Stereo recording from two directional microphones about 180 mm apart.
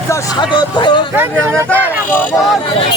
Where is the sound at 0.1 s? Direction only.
20° left (ahead or behind).